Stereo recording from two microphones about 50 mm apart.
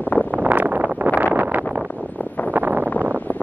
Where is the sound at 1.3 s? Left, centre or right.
Right.